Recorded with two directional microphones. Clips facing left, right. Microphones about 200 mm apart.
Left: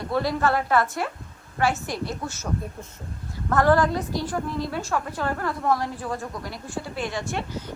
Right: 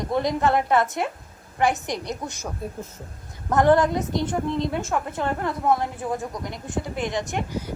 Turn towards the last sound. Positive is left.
turn(degrees=-10)  # may be behind; listen again after turning